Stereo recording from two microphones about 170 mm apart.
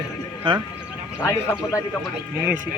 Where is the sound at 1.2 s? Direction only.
15° left (ahead or behind).